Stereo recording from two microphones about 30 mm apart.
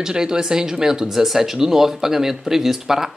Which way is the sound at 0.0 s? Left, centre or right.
Right.